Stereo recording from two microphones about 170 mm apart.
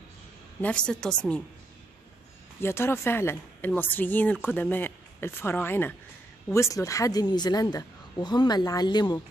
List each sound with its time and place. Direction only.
0.6 s a woman's voice: 5° left (ahead or behind)
2.6 s a woman's voice: 15° left (ahead or behind)